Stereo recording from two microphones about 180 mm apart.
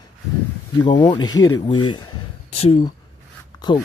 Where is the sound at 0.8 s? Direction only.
25° left (ahead or behind).